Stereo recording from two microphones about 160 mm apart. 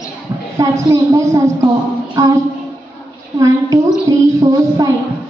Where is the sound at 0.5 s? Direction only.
20° right (ahead or behind).